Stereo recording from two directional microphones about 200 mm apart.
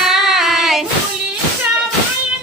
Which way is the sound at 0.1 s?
Centre (ahead or behind).